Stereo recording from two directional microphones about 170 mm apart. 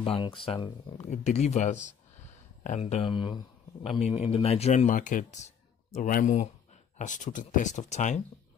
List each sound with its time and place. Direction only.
0.0 s speech: 30° left (ahead or behind)
2.8 s speech: 30° left (ahead or behind)